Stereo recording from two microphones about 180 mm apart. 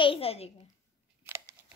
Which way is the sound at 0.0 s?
30° left (ahead or behind).